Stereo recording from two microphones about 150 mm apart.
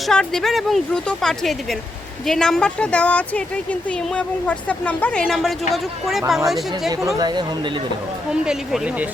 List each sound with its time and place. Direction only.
0.1 s speech: 5° left (ahead or behind)
7.2 s speech: 30° right (ahead or behind)
8.3 s speech: 5° right (ahead or behind)